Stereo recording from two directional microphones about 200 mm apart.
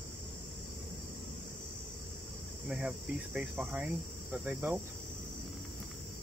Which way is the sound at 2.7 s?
5° right (ahead or behind).